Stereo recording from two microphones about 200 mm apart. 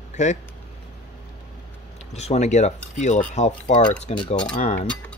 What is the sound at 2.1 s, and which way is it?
Speech, 35° left (ahead or behind).